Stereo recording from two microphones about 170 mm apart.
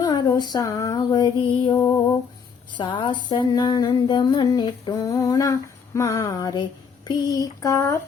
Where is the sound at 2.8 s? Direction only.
30° left (ahead or behind).